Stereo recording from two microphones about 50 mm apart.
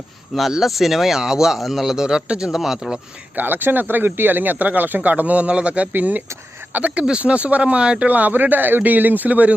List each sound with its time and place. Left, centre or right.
0.5 s speech: centre
2.5 s speech: centre
3.3 s speech: right
5.9 s speech: right